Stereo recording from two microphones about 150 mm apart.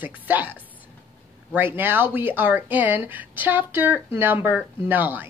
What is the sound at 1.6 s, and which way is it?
Speech, 15° right (ahead or behind).